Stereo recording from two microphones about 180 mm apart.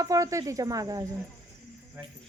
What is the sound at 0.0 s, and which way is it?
Speech, 20° right (ahead or behind).